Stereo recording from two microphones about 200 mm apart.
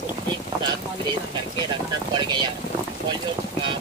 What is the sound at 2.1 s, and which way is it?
Speech, 20° right (ahead or behind).